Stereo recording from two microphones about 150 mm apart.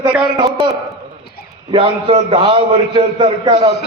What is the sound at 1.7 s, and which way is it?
A man's voice, 35° right (ahead or behind).